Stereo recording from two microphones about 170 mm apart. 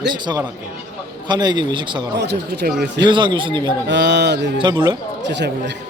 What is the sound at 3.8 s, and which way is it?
Speech, 90° right.